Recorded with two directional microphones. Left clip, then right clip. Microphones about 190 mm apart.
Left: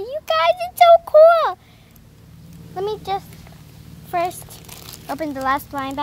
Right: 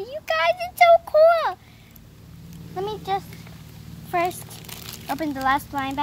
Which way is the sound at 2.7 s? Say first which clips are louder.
Left 3 dB; 50° left (ahead or behind).